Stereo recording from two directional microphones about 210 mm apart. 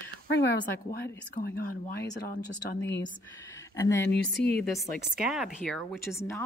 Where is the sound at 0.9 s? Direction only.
50° left (ahead or behind).